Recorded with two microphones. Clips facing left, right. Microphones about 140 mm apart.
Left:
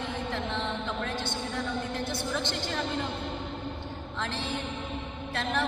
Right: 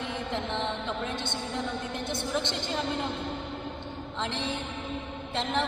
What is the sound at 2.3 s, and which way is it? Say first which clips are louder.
Speech: right 4 dB; 20° right (ahead or behind).